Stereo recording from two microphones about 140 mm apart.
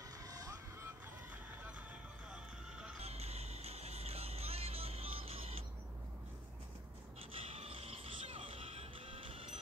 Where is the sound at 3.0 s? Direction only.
50° right (ahead or behind).